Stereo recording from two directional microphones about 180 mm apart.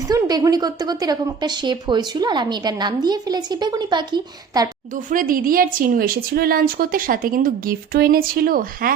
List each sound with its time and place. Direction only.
0.1 s a woman's voice: 20° right (ahead or behind)
5.0 s a woman's voice: 50° right (ahead or behind)